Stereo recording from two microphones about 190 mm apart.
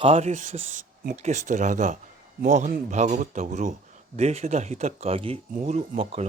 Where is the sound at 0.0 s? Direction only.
35° right (ahead or behind).